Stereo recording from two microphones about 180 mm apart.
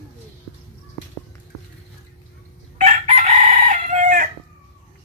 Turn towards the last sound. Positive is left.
turn(degrees=-45)  # may be behind; listen again after turning